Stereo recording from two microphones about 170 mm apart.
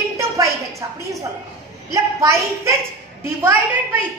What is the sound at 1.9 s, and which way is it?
Speech, 20° right (ahead or behind).